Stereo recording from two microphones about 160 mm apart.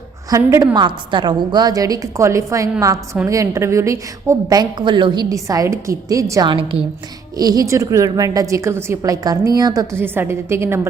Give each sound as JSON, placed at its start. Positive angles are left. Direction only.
{"t": 0.3, "sound": "a woman's voice", "side_deg": -20}
{"t": 7.3, "sound": "a woman's voice", "side_deg": -25}